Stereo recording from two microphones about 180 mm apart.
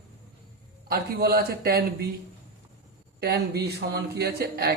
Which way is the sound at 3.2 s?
60° right (ahead or behind).